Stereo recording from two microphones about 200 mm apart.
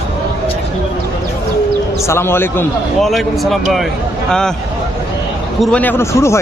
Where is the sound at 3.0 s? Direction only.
Centre (ahead or behind).